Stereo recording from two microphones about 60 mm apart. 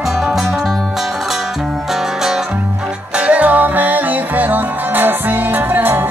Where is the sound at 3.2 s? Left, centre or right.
Right.